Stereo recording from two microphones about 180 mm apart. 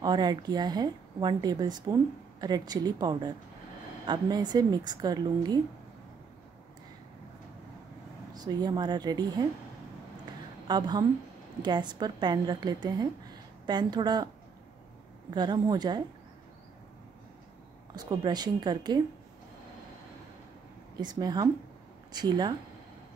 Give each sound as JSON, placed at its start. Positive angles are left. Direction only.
{"t": 0.0, "sound": "a woman's voice", "side_deg": -25}
{"t": 8.4, "sound": "a woman's voice", "side_deg": -20}
{"t": 10.7, "sound": "a woman's voice", "side_deg": -25}
{"t": 15.3, "sound": "a woman's voice", "side_deg": -25}
{"t": 17.9, "sound": "a woman's voice", "side_deg": -20}
{"t": 21.0, "sound": "a woman's voice", "side_deg": -25}